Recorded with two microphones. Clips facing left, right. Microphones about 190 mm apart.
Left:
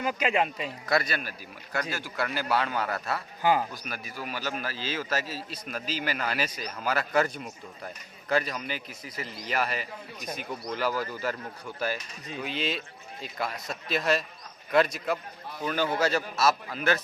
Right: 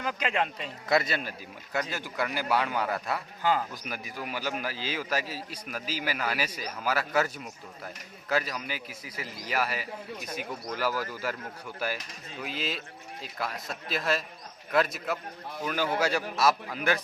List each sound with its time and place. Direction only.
0.0 s speech: 10° left (ahead or behind)
0.9 s a man's voice: 20° right (ahead or behind)
12.4 s a man's voice: centre (ahead or behind)